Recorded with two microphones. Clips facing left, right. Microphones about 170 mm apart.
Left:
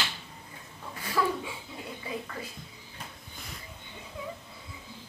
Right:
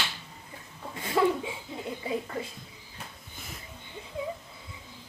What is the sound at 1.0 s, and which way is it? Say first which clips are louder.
Laughter: right 4 dB; 25° right (ahead or behind).